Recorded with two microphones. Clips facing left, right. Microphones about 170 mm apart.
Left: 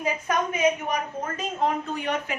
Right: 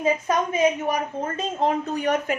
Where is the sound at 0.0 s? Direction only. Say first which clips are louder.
Right 4 dB; 25° right (ahead or behind).